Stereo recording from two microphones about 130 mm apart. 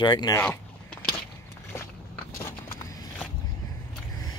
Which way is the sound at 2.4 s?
25° left (ahead or behind).